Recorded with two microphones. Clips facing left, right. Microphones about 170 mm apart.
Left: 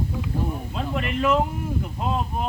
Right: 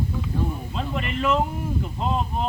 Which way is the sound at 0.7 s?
5° left (ahead or behind).